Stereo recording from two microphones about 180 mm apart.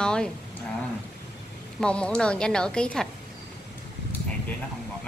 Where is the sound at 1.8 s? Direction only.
5° left (ahead or behind).